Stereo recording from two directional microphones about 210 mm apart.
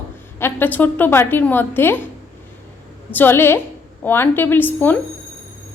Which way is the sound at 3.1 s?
10° left (ahead or behind).